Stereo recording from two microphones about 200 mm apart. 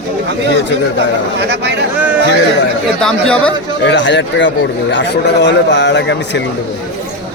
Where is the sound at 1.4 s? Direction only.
60° right (ahead or behind).